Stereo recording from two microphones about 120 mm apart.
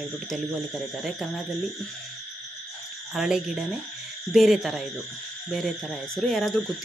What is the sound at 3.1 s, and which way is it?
Speech, 5° right (ahead or behind).